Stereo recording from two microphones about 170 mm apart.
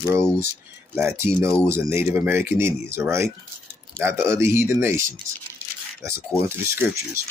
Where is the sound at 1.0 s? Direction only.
15° right (ahead or behind).